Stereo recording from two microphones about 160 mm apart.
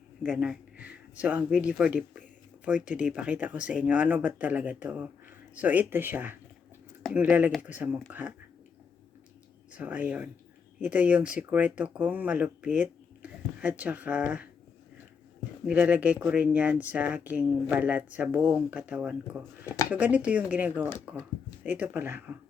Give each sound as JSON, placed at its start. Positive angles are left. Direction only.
{"t": 0.2, "sound": "speech", "side_deg": -10}
{"t": 9.7, "sound": "speech", "side_deg": -10}
{"t": 15.6, "sound": "speech", "side_deg": -10}
{"t": 19.6, "sound": "a sound", "side_deg": 20}
{"t": 19.9, "sound": "speech", "side_deg": -10}